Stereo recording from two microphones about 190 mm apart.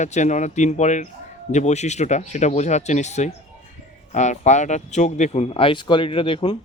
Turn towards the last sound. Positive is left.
turn(degrees=30)  # may be behind; listen again after turning